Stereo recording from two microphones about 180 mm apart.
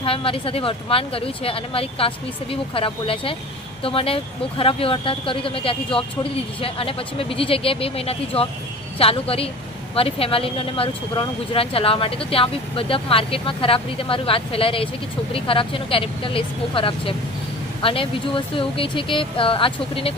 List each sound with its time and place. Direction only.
0.0 s speech: 30° left (ahead or behind)